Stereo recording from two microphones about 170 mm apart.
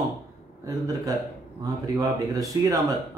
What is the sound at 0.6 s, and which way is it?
Speech, 20° right (ahead or behind).